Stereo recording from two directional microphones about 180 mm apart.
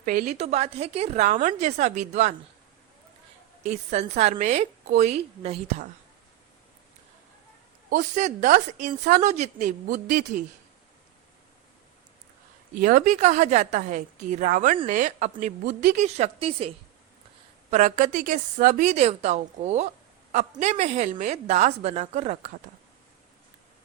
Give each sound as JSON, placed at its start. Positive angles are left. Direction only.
{"t": 0.0, "sound": "a woman's voice", "side_deg": -50}
{"t": 0.3, "sound": "a woman's voice", "side_deg": -35}
{"t": 3.7, "sound": "a woman's voice", "side_deg": -40}
{"t": 7.9, "sound": "a woman's voice", "side_deg": -45}
{"t": 12.8, "sound": "a woman's voice", "side_deg": -50}